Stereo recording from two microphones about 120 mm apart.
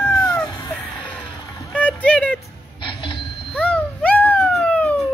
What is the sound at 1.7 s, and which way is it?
Rowboat, 10° left (ahead or behind).